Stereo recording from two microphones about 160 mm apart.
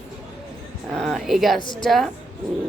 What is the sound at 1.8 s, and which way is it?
Speech, centre (ahead or behind).